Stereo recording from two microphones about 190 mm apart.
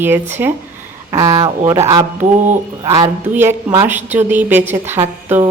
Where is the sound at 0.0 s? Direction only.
10° right (ahead or behind).